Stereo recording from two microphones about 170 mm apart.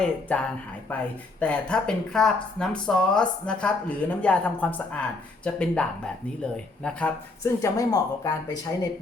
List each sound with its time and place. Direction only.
0.0 s speech: 5° left (ahead or behind)
6.8 s speech: 10° left (ahead or behind)